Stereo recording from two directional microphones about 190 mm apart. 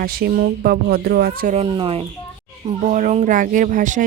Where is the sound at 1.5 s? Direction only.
30° right (ahead or behind).